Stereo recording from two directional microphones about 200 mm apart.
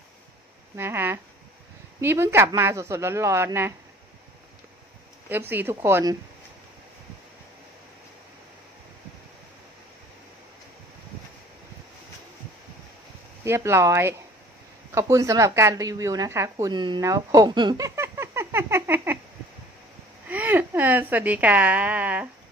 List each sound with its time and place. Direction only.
0.7 s a woman's voice: 10° right (ahead or behind)
5.5 s a woman's voice: 10° right (ahead or behind)
13.4 s a woman's voice: 15° right (ahead or behind)
20.2 s a woman's voice: 10° right (ahead or behind)